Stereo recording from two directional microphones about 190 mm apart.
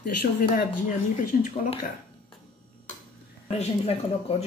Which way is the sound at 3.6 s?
30° left (ahead or behind).